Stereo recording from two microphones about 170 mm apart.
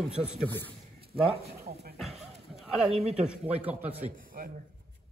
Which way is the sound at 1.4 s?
65° right (ahead or behind).